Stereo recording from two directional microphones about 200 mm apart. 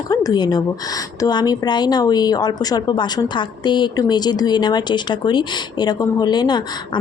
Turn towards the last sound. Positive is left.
turn(degrees=20)  # may be behind; listen again after turning